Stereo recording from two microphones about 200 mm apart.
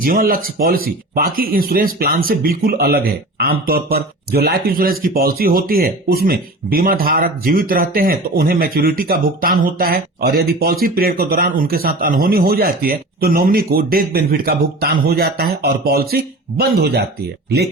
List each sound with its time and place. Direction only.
0.0 s speech: 45° right (ahead or behind)